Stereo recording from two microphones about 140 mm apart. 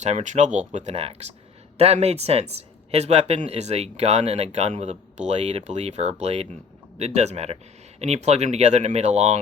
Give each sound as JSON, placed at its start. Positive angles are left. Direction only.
{"t": 0.0, "sound": "speech", "side_deg": -55}